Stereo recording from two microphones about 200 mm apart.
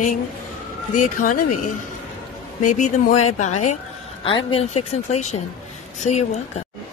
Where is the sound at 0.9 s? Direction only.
40° left (ahead or behind).